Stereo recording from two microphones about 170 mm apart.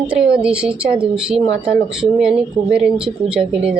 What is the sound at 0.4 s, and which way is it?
A woman's voice, 5° right (ahead or behind).